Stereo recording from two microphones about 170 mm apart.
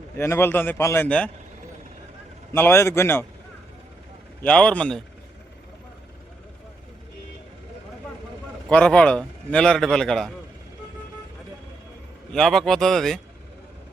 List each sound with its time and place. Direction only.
0.2 s a man's voice: 15° left (ahead or behind)
2.5 s a man's voice: 15° left (ahead or behind)
4.4 s a man's voice: 5° left (ahead or behind)
8.7 s a man's voice: 5° left (ahead or behind)
12.3 s a man's voice: centre (ahead or behind)